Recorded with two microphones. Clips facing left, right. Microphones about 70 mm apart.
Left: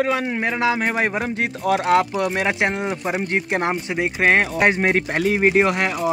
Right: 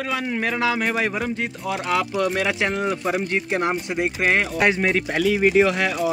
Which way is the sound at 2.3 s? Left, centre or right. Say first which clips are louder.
Left 1 dB; left.